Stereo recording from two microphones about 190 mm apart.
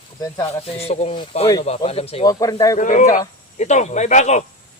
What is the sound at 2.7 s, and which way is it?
Speech, 45° left (ahead or behind).